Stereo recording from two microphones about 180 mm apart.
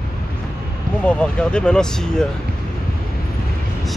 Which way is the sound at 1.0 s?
5° left (ahead or behind).